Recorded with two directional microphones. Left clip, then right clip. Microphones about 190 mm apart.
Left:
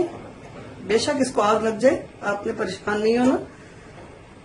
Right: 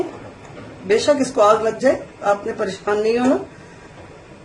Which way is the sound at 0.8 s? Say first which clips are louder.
Right 5 dB; 50° left (ahead or behind).